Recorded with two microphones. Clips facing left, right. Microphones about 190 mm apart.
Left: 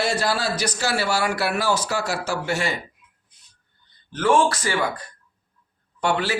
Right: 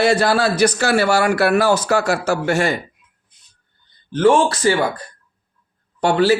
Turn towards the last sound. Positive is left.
turn(degrees=-35)  # may be behind; listen again after turning